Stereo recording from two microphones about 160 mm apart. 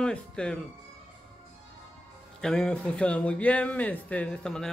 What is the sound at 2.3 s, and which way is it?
Speech, 5° left (ahead or behind).